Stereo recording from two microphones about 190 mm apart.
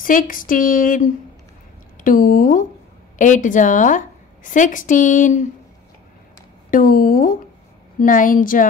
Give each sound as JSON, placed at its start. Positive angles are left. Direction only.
{"t": 0.0, "sound": "a woman's voice", "side_deg": 45}
{"t": 2.0, "sound": "a sound", "side_deg": 45}
{"t": 3.2, "sound": "a woman's voice", "side_deg": 40}
{"t": 6.7, "sound": "a woman's voice", "side_deg": 50}